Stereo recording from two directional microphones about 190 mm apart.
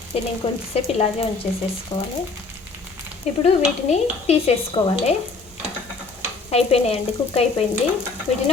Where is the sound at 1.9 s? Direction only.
15° left (ahead or behind).